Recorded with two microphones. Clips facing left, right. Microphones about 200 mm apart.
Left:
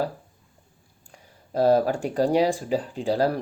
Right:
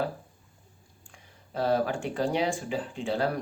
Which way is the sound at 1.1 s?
40° left (ahead or behind).